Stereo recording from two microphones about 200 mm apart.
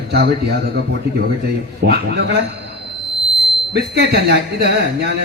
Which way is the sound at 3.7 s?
55° right (ahead or behind).